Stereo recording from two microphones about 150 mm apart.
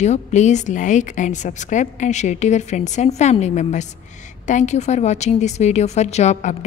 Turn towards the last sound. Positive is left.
turn(degrees=55)  # may be behind; listen again after turning